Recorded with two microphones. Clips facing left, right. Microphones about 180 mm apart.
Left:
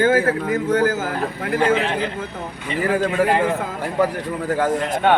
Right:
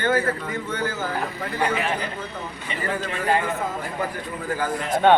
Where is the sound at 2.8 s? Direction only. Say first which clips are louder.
Left 9 dB; 60° left (ahead or behind).